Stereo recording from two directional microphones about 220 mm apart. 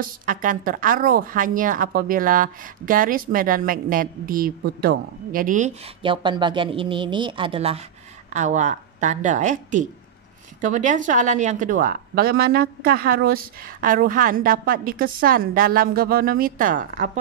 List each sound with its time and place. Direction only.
0.0 s a woman's voice: 40° right (ahead or behind)
6.0 s a woman's voice: 20° right (ahead or behind); by 17.2 s 35° right (ahead or behind)